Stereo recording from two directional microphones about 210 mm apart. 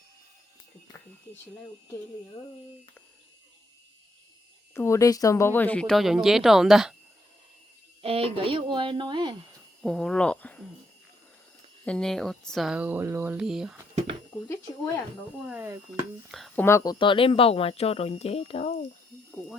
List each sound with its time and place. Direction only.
4.7 s speech: 15° left (ahead or behind)
8.0 s speech: 25° right (ahead or behind)
9.8 s speech: centre (ahead or behind)
11.9 s speech: 5° left (ahead or behind)
15.4 s speech: 10° right (ahead or behind)
16.6 s speech: 15° left (ahead or behind)